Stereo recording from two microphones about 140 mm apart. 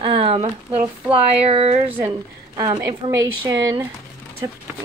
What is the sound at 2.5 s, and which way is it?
Speech, 25° right (ahead or behind).